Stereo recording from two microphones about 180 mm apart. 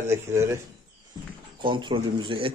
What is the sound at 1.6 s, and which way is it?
Speech, 25° right (ahead or behind).